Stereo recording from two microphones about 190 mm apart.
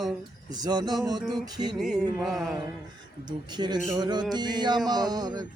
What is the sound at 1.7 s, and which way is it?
Music, centre (ahead or behind).